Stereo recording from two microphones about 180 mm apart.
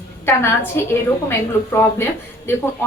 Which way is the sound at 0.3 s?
15° left (ahead or behind).